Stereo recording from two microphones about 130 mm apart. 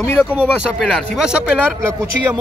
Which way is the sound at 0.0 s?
20° left (ahead or behind).